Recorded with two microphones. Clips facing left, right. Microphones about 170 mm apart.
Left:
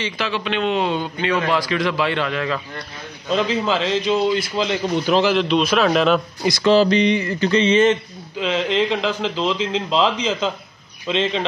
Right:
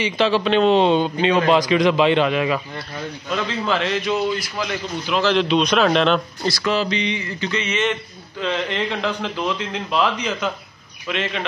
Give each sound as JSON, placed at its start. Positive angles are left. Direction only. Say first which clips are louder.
{"t": 0.2, "sound": "a man's voice", "louder": "right 7 dB", "side_deg": -35}
{"t": 3.3, "sound": "a man's voice", "louder": "left 3 dB", "side_deg": 15}
{"t": 5.2, "sound": "a man's voice", "louder": "even", "side_deg": 5}
{"t": 6.4, "sound": "speech", "louder": "left 4 dB", "side_deg": 20}
{"t": 6.7, "sound": "mantra", "louder": "left 9 dB", "side_deg": 40}
{"t": 7.6, "sound": "speech", "louder": "left 8 dB", "side_deg": 30}
{"t": 8.4, "sound": "a man's voice", "louder": "left 4 dB", "side_deg": 15}